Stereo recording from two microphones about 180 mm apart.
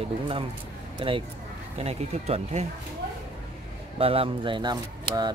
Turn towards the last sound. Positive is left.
turn(degrees=-25)  # may be behind; listen again after turning